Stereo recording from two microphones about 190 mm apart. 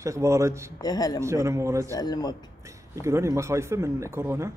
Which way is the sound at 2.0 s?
20° left (ahead or behind).